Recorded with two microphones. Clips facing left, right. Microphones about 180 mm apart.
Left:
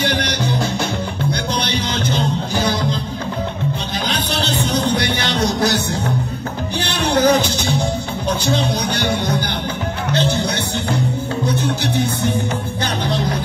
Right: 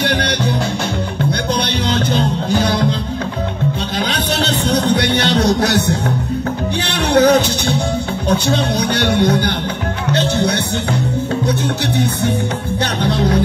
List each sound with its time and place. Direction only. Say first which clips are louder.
0.0 s music: right 2 dB; 60° right (ahead or behind)
6.8 s music: right 3 dB; 65° right (ahead or behind)